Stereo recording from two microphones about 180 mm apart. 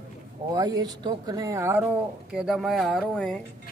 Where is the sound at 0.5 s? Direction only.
20° right (ahead or behind).